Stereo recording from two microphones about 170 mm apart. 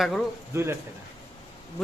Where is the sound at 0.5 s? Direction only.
15° right (ahead or behind).